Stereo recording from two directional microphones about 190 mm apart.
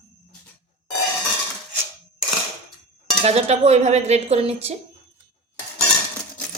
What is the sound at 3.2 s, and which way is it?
Dishes, 35° right (ahead or behind).